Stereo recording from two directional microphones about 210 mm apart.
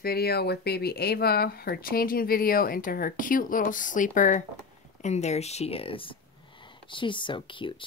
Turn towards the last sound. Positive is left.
turn(degrees=25)  # may be behind; listen again after turning